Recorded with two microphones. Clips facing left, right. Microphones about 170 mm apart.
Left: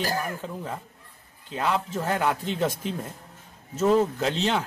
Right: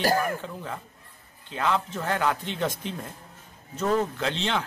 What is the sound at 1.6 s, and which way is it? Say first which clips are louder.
A man's voice: even; 10° left (ahead or behind).